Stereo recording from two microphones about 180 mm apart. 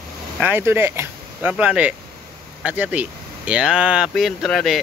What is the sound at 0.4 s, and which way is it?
Speech, 10° right (ahead or behind).